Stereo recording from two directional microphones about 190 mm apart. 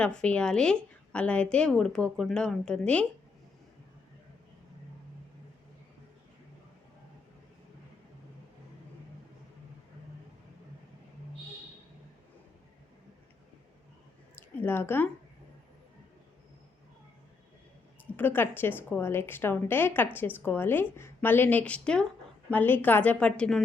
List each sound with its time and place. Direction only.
0.0 s a woman's voice: 5° left (ahead or behind)
14.3 s speech: 10° left (ahead or behind)
18.2 s a woman's voice: 10° left (ahead or behind)